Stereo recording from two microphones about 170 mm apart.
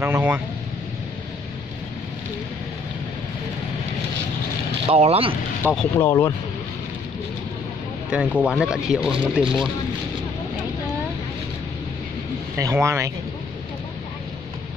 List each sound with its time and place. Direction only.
0.0 s a man's voice: 10° right (ahead or behind)
4.8 s speech: 35° right (ahead or behind)
5.6 s a man's voice: 10° right (ahead or behind)
5.9 s speech: 15° left (ahead or behind)
8.1 s speech: 5° right (ahead or behind)
12.5 s a man's voice: 15° right (ahead or behind)